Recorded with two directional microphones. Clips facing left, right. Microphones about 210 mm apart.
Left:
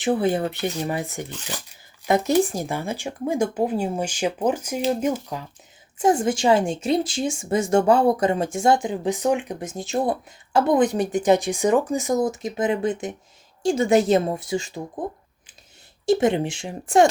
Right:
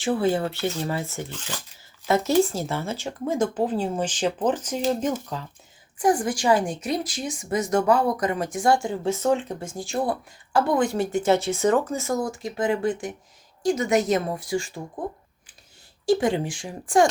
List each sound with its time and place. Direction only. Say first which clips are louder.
0.0 s speech: left 1 dB; 20° left (ahead or behind)
6.0 s a woman's voice: left 2 dB; 25° left (ahead or behind)
16.0 s a woman's voice: left 2 dB; 20° left (ahead or behind)